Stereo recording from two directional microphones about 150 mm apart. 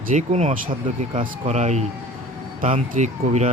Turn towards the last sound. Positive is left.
turn(degrees=-50)  # may be behind; listen again after turning